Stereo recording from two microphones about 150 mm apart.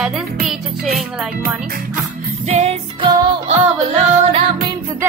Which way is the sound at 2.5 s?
45° right (ahead or behind).